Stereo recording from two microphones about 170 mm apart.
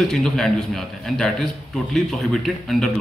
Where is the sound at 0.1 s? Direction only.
Centre (ahead or behind).